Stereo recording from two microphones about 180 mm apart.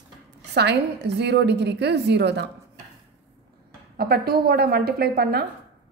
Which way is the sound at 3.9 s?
60° right (ahead or behind).